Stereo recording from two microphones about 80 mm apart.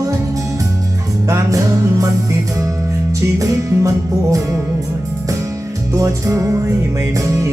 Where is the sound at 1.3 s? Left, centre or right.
Right.